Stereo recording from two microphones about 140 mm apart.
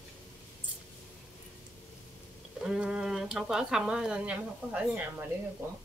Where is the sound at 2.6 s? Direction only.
5° right (ahead or behind).